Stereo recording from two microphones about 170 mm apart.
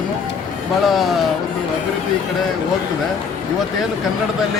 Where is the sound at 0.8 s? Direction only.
Centre (ahead or behind).